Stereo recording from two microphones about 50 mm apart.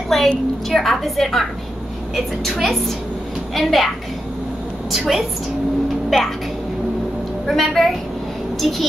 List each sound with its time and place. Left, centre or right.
0.1 s a woman's voice: centre
4.9 s a woman's voice: centre
7.4 s a woman's voice: centre